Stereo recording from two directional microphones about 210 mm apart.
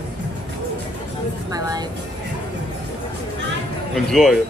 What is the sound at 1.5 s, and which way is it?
Speech, 15° right (ahead or behind).